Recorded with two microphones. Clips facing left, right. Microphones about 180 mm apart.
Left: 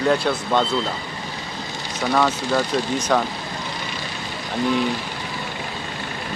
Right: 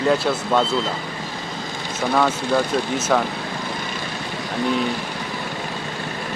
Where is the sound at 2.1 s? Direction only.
5° right (ahead or behind).